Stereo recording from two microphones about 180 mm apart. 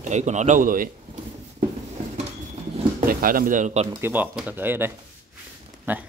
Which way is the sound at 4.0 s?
10° right (ahead or behind).